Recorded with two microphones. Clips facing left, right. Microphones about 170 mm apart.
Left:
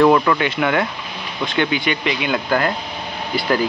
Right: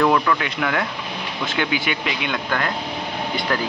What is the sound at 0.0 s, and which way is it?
Speech, 15° left (ahead or behind).